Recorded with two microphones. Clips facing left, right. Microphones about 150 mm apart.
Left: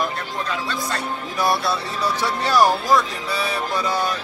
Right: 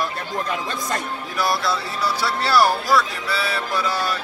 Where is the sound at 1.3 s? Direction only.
25° left (ahead or behind).